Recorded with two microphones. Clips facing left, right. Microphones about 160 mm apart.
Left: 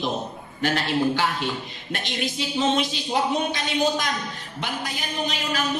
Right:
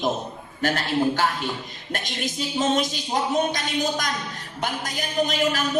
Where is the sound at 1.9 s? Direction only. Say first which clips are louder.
Left 1 dB; 45° right (ahead or behind).